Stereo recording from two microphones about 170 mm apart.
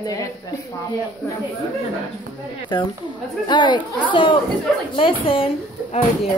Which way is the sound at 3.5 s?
25° left (ahead or behind).